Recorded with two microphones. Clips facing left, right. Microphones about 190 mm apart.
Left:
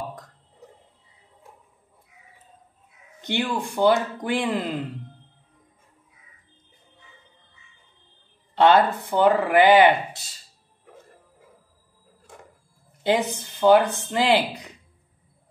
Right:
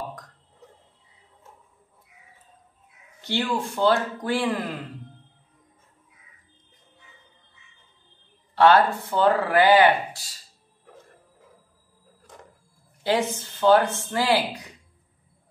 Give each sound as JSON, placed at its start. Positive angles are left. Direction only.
{"t": 3.2, "sound": "speech", "side_deg": 20}
{"t": 8.5, "sound": "speech", "side_deg": 20}
{"t": 13.0, "sound": "speech", "side_deg": 15}